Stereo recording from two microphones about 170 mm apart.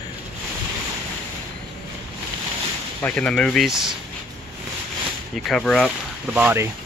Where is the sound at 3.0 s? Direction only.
5° left (ahead or behind).